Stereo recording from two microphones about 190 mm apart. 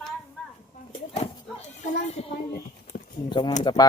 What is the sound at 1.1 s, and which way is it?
Dog, 35° left (ahead or behind).